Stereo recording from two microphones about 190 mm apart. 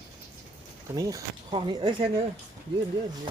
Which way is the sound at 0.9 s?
20° right (ahead or behind).